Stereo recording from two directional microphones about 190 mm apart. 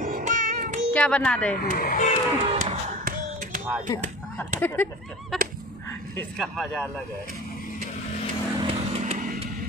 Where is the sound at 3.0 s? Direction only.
45° right (ahead or behind).